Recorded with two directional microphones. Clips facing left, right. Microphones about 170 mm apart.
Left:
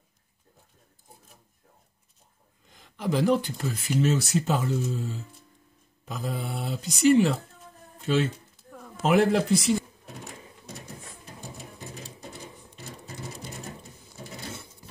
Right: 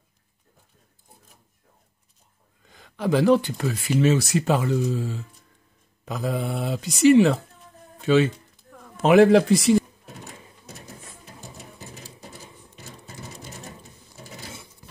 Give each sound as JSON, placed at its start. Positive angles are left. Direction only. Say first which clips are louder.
{"t": 2.8, "sound": "a man's voice", "louder": "right 5 dB", "side_deg": -70}